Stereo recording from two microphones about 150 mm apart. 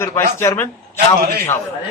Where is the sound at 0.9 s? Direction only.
90° right.